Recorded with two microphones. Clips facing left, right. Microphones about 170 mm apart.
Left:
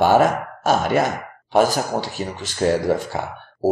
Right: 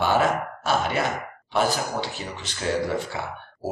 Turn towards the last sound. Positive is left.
turn(degrees=45)  # may be behind; listen again after turning